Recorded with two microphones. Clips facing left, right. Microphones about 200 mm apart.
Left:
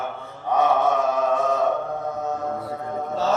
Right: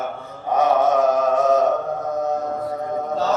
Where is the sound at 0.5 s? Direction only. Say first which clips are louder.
Right 3 dB; 40° right (ahead or behind).